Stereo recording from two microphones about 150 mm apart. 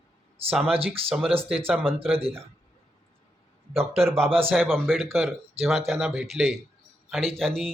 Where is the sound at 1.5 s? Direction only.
5° right (ahead or behind).